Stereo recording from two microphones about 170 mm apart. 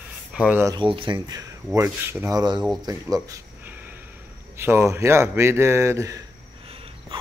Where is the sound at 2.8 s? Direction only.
20° right (ahead or behind).